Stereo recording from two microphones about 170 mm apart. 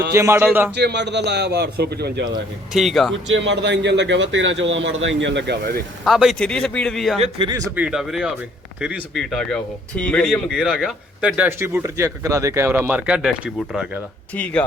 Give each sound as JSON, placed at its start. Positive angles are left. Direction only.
{"t": 0.1, "sound": "a man's voice", "side_deg": -15}
{"t": 0.8, "sound": "a man's voice", "side_deg": -85}
{"t": 2.7, "sound": "speech", "side_deg": 0}
{"t": 3.3, "sound": "a man's voice", "side_deg": -90}
{"t": 6.1, "sound": "speech", "side_deg": 0}
{"t": 7.2, "sound": "speech", "side_deg": -30}
{"t": 7.8, "sound": "a man's voice", "side_deg": -5}
{"t": 9.3, "sound": "speech", "side_deg": 5}
{"t": 14.3, "sound": "speech", "side_deg": 10}